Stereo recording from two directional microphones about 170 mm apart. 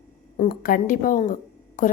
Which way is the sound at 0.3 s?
55° left (ahead or behind).